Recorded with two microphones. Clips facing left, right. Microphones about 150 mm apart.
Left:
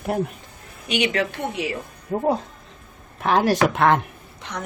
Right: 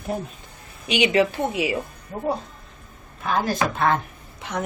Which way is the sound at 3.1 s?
80° left.